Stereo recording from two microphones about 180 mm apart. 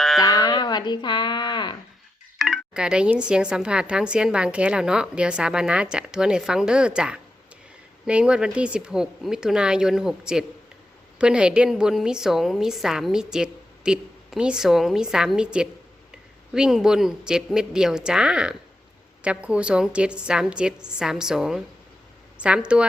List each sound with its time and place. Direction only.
0.2 s speech: 20° left (ahead or behind)
2.4 s speech: centre (ahead or behind)